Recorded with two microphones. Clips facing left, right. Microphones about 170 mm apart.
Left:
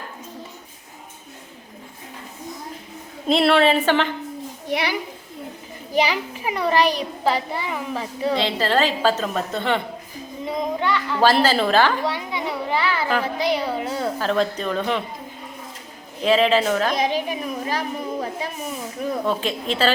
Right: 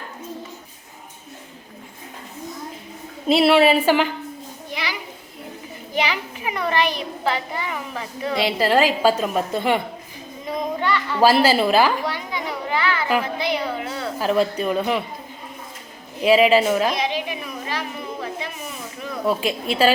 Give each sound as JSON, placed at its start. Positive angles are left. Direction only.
{"t": 3.2, "sound": "a woman's voice", "side_deg": -5}
{"t": 4.7, "sound": "a child's voice", "side_deg": 60}
{"t": 5.9, "sound": "a child's voice", "side_deg": 35}
{"t": 8.4, "sound": "a woman's voice", "side_deg": -10}
{"t": 12.0, "sound": "a sound", "side_deg": 25}
{"t": 13.2, "sound": "a woman's voice", "side_deg": 35}
{"t": 14.2, "sound": "a woman's voice", "side_deg": -10}
{"t": 16.2, "sound": "a woman's voice", "side_deg": -10}
{"t": 17.0, "sound": "a sound", "side_deg": 45}
{"t": 19.2, "sound": "a woman's voice", "side_deg": -10}